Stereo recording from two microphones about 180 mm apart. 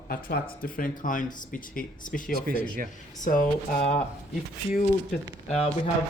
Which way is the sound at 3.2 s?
45° left (ahead or behind).